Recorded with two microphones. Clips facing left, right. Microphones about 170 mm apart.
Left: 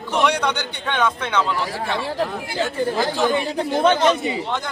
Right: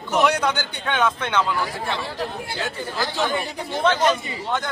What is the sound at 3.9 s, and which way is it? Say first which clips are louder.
Speech: left 1 dB; 25° left (ahead or behind).